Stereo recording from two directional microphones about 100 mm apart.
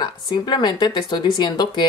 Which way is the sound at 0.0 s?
45° left (ahead or behind).